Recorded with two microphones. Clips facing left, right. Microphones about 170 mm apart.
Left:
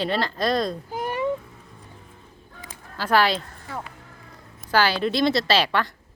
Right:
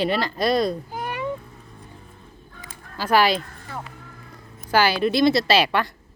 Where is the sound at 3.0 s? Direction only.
10° right (ahead or behind).